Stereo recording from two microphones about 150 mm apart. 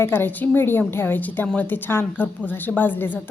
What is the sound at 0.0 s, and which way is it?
A woman's voice, 15° left (ahead or behind).